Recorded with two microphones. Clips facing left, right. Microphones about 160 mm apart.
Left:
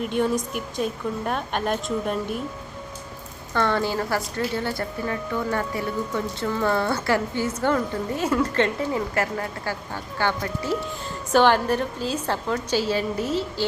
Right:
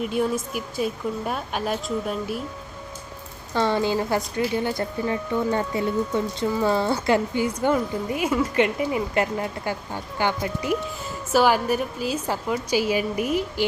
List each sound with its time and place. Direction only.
0.0 s a woman's voice: 5° right (ahead or behind)
3.5 s speech: 15° right (ahead or behind)